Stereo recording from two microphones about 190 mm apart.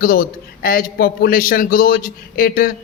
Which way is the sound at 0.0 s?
50° left (ahead or behind).